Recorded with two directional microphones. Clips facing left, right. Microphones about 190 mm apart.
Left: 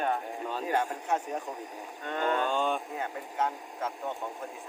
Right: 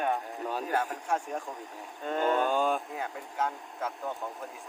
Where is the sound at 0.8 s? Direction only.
5° left (ahead or behind).